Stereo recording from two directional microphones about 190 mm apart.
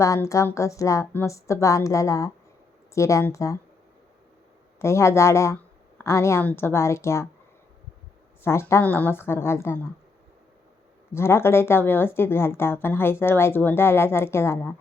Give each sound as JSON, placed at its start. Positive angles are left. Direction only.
{"t": 0.0, "sound": "speech", "side_deg": 15}
{"t": 4.8, "sound": "speech", "side_deg": 15}
{"t": 8.4, "sound": "speech", "side_deg": 15}
{"t": 11.1, "sound": "speech", "side_deg": 15}